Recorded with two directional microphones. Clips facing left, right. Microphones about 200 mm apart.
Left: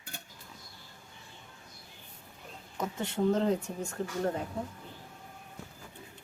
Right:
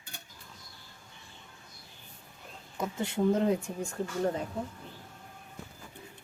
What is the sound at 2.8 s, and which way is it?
Speech, 10° right (ahead or behind).